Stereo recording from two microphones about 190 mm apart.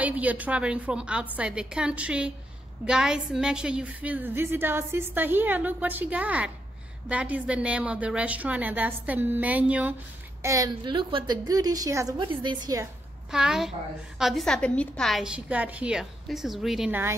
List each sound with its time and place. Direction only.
0.0 s a woman's voice: 10° right (ahead or behind)
13.3 s a woman's voice: 5° right (ahead or behind)